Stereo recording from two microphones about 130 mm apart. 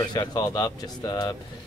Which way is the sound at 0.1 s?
30° left (ahead or behind).